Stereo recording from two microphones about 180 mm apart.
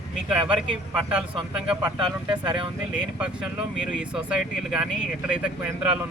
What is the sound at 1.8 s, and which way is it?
Speech, 25° right (ahead or behind).